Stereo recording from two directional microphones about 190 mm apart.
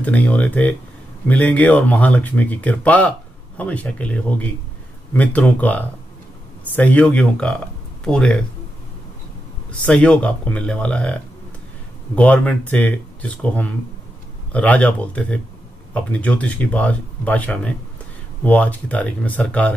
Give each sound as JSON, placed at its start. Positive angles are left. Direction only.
{"t": 0.0, "sound": "speech", "side_deg": 5}
{"t": 9.7, "sound": "speech", "side_deg": 5}
{"t": 12.2, "sound": "speech", "side_deg": 5}